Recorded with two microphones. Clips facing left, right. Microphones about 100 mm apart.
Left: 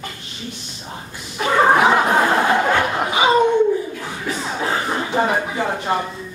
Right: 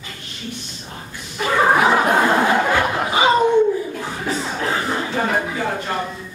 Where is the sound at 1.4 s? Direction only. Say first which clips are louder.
Left 1 dB; 5° left (ahead or behind).